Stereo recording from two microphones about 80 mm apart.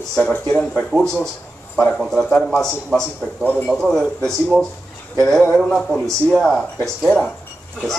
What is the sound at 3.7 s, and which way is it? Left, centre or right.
Speech, centre.